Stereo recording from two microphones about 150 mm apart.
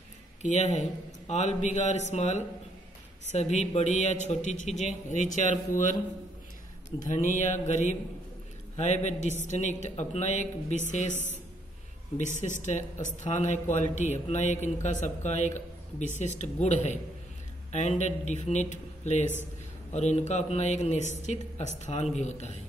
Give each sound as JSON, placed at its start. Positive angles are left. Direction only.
{"t": 0.4, "sound": "a man's voice", "side_deg": 50}
{"t": 7.1, "sound": "a man's voice", "side_deg": 55}
{"t": 12.4, "sound": "a man's voice", "side_deg": 55}